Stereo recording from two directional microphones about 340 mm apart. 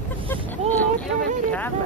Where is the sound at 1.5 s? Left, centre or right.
Centre.